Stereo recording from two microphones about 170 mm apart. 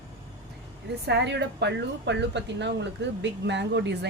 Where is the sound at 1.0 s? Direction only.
90° right.